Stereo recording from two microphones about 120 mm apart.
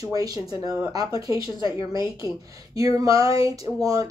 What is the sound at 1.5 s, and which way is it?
Speech, 40° left (ahead or behind).